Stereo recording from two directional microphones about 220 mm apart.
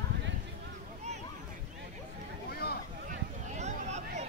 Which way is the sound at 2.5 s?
45° left (ahead or behind).